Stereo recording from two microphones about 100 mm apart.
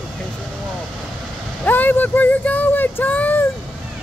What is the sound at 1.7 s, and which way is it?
Speech, 20° left (ahead or behind).